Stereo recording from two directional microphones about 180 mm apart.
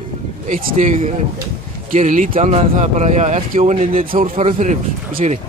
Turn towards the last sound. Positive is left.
turn(degrees=-40)  # may be behind; listen again after turning